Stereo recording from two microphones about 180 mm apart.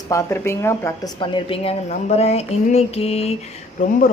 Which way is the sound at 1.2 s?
30° left (ahead or behind).